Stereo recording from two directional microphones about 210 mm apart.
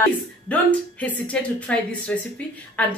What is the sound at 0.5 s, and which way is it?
A woman's voice, 5° left (ahead or behind).